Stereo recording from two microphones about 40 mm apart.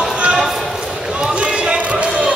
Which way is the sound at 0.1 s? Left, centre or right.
Right.